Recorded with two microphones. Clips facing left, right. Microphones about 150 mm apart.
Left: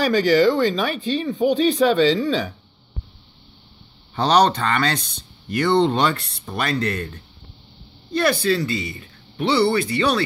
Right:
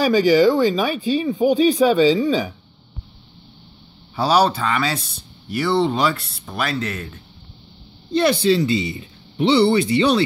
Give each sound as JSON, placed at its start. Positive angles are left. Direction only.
{"t": 0.0, "sound": "speech", "side_deg": -10}
{"t": 4.1, "sound": "speech", "side_deg": -5}
{"t": 8.1, "sound": "speech", "side_deg": -25}